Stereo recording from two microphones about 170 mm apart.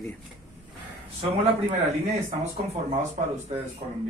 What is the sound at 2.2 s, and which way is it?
Speech, 40° right (ahead or behind).